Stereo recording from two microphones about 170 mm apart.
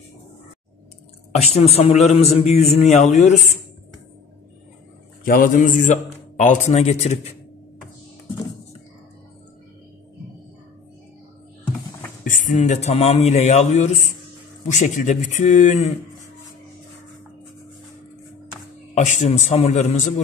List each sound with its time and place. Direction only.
1.3 s a man's voice: 40° left (ahead or behind)
5.2 s a man's voice: 55° left (ahead or behind); by 7.3 s 40° left (ahead or behind)
12.3 s a man's voice: 45° left (ahead or behind)
18.9 s a man's voice: 45° left (ahead or behind)